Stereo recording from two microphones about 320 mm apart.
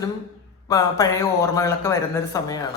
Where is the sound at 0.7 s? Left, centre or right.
Centre.